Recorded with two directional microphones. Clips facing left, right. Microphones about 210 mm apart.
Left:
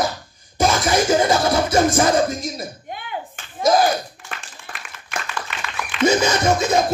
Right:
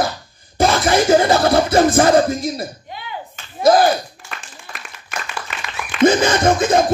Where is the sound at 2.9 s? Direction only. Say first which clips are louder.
Left 1 dB; 50° left (ahead or behind).